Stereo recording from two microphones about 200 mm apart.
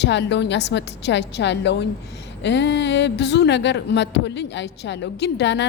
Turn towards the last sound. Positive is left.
turn(degrees=60)  # may be behind; listen again after turning